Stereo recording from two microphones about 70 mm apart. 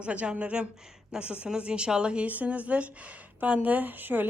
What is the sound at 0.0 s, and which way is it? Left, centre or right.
A woman's voice, centre.